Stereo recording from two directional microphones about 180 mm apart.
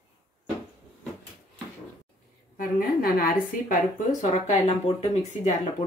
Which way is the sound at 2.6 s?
55° left (ahead or behind).